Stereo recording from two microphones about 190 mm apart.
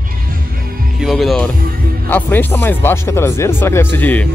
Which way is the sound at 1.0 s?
Centre (ahead or behind).